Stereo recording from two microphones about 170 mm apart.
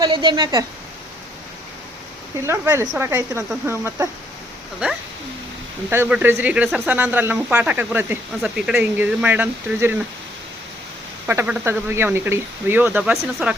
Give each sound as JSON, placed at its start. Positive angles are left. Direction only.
{"t": 0.0, "sound": "a woman's voice", "side_deg": -30}
{"t": 2.5, "sound": "speech", "side_deg": -15}
{"t": 5.9, "sound": "speech", "side_deg": -10}
{"t": 11.3, "sound": "speech", "side_deg": -10}